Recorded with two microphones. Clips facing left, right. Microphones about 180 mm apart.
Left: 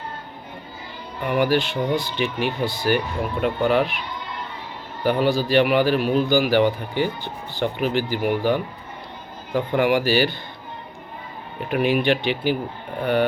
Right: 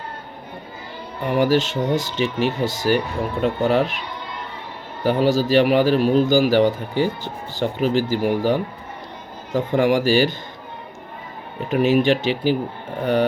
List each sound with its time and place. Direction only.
1.3 s a man's voice: 40° right (ahead or behind)
5.0 s a man's voice: 40° right (ahead or behind)
11.9 s a man's voice: 35° right (ahead or behind)